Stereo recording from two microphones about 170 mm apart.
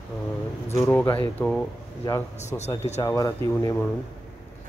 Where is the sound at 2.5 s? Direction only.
20° left (ahead or behind).